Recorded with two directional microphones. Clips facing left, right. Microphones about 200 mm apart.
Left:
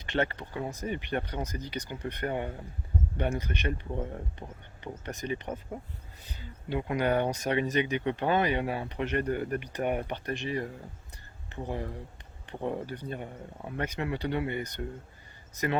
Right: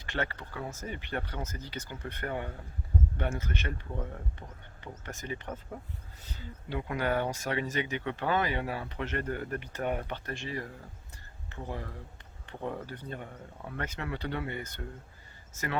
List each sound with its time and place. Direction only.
0.0 s speech: 20° left (ahead or behind)